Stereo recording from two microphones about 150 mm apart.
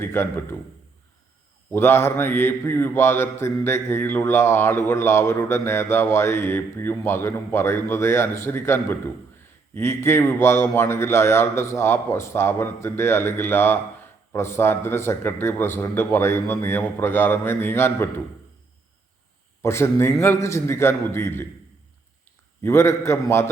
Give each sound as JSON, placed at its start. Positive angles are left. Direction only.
{"t": 0.0, "sound": "a man's voice", "side_deg": 15}
{"t": 1.7, "sound": "a man's voice", "side_deg": 15}
{"t": 19.6, "sound": "a man's voice", "side_deg": 15}
{"t": 22.6, "sound": "a man's voice", "side_deg": 15}